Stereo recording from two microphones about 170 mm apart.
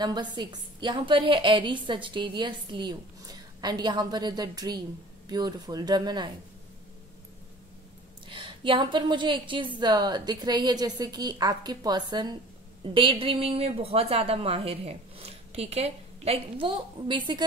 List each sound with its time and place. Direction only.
0.0 s a woman's voice: 25° right (ahead or behind)
8.3 s a woman's voice: 30° right (ahead or behind)